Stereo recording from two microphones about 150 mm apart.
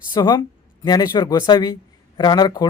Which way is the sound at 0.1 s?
30° left (ahead or behind).